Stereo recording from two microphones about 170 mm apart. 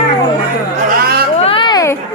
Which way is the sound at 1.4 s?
35° left (ahead or behind).